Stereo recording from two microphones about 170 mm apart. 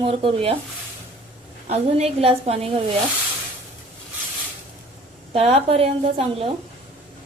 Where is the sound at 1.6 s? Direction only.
40° right (ahead or behind).